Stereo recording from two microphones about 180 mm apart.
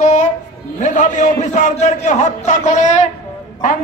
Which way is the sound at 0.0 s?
40° left (ahead or behind).